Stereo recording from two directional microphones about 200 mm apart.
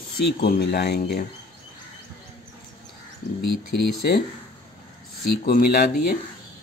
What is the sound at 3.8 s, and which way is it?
Speech, 50° left (ahead or behind).